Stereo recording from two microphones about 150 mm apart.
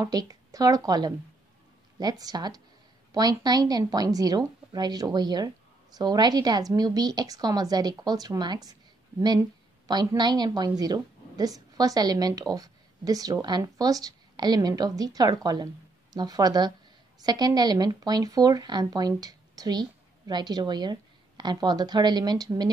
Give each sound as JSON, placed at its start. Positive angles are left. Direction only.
{"t": 0.0, "sound": "a woman's voice", "side_deg": -25}